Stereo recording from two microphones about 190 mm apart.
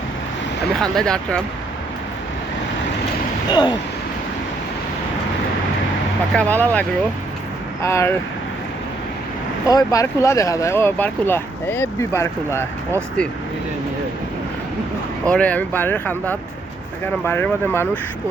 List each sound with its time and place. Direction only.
0.8 s speech: 5° left (ahead or behind)
3.5 s a sound: 25° left (ahead or behind)
6.3 s speech: 10° left (ahead or behind)
9.6 s speech: 20° left (ahead or behind)
15.3 s speech: 5° left (ahead or behind)